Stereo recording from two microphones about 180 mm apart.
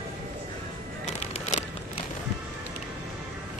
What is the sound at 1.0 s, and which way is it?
Music, 40° left (ahead or behind).